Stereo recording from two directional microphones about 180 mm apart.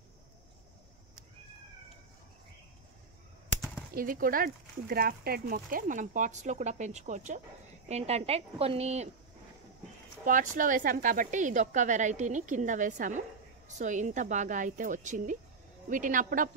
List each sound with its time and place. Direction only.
3.9 s a woman's voice: 50° right (ahead or behind)
10.2 s speech: 50° right (ahead or behind)